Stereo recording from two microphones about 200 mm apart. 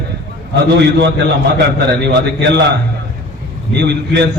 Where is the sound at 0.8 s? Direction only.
55° right (ahead or behind).